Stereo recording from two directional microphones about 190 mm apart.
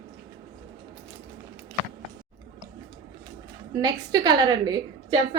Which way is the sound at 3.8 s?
20° right (ahead or behind).